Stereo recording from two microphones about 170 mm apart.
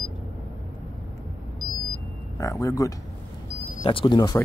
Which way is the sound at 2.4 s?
20° left (ahead or behind).